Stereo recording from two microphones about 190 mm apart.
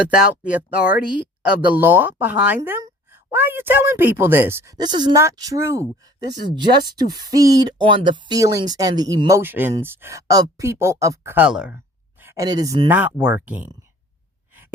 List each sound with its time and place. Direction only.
0.1 s speech: 5° right (ahead or behind)
0.8 s speech: 50° left (ahead or behind)
1.4 s speech: 5° right (ahead or behind)
12.2 s speech: 15° right (ahead or behind)
12.9 s speech: 10° right (ahead or behind)